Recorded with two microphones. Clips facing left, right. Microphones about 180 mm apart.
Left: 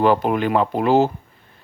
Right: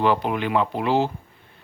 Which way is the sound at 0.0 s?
45° left (ahead or behind).